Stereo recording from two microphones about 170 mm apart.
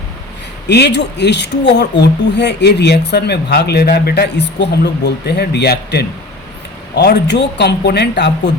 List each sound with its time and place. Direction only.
0.7 s speech: 85° left